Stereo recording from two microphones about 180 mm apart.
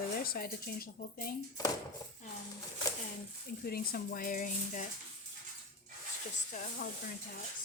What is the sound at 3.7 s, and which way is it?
A woman's voice, 50° left (ahead or behind).